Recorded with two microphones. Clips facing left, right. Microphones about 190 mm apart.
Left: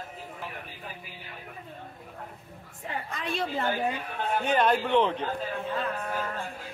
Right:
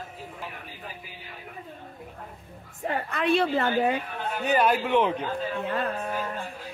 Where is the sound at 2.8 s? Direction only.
60° right (ahead or behind).